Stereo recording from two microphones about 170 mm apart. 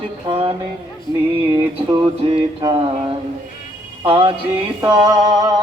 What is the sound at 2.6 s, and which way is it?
Music, 30° right (ahead or behind).